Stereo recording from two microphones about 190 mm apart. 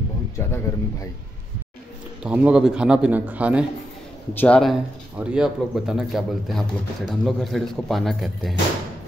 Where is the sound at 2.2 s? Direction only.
5° right (ahead or behind).